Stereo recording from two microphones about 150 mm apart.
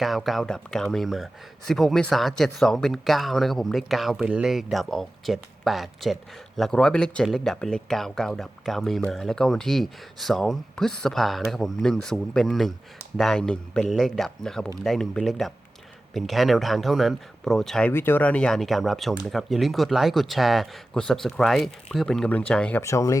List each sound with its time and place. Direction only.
0.0 s speech: centre (ahead or behind)
17.9 s speech: 15° left (ahead or behind)
22.8 s speech: 20° left (ahead or behind)